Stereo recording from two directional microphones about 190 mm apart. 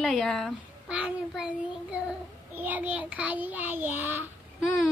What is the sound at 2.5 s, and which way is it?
A child's voice, 10° right (ahead or behind).